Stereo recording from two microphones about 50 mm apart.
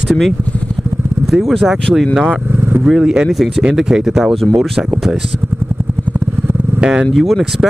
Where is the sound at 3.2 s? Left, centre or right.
Centre.